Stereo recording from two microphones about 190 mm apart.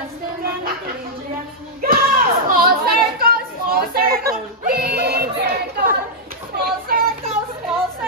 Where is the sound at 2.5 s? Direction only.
50° right (ahead or behind).